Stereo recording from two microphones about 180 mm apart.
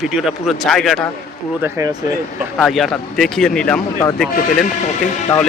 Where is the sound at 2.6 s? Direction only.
Centre (ahead or behind).